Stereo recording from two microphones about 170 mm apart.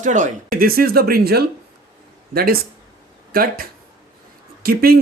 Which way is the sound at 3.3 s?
60° right (ahead or behind).